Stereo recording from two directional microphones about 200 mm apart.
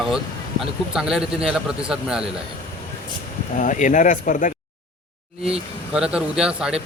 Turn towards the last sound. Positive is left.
turn(degrees=-5)  # may be behind; listen again after turning